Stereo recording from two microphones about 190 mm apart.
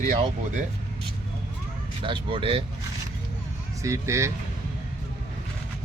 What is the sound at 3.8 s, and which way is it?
Speech, 15° right (ahead or behind).